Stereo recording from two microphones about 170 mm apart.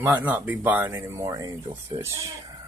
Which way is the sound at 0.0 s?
10° right (ahead or behind).